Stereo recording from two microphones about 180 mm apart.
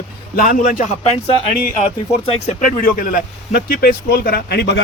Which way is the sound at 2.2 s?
35° left (ahead or behind).